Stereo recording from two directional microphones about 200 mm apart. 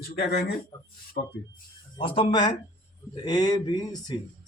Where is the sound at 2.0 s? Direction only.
25° left (ahead or behind).